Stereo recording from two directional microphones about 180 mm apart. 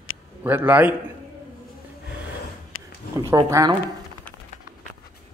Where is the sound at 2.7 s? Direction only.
90° left.